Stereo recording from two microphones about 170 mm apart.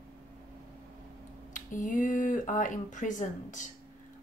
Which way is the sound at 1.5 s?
50° left (ahead or behind).